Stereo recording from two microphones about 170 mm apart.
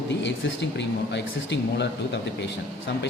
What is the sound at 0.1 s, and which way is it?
Speech, 90° left.